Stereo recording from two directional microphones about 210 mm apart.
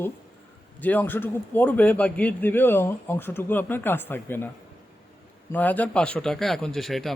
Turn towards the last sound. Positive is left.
turn(degrees=0)  # may be behind; listen again after turning